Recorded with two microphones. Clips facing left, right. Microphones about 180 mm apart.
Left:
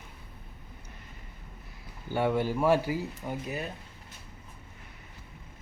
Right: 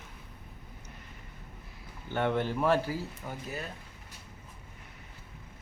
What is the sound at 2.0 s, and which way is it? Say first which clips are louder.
Speech: left 2 dB; 10° left (ahead or behind).